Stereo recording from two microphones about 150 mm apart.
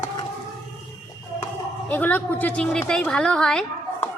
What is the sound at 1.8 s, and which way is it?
A woman's voice, 10° left (ahead or behind).